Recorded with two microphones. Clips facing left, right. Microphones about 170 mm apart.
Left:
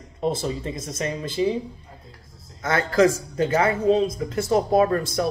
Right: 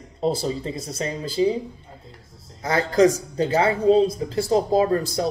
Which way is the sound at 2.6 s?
35° right (ahead or behind).